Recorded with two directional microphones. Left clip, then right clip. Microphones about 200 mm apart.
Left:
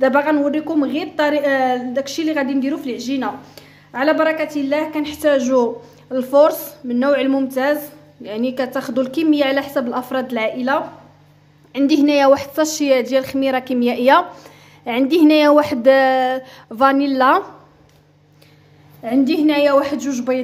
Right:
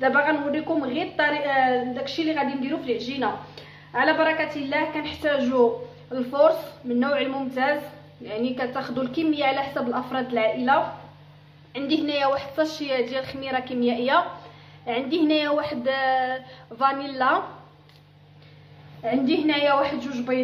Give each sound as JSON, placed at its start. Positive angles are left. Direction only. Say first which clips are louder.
{"t": 0.0, "sound": "a woman's voice", "louder": "left 6 dB", "side_deg": 65}
{"t": 19.0, "sound": "a woman's voice", "louder": "left 6 dB", "side_deg": 60}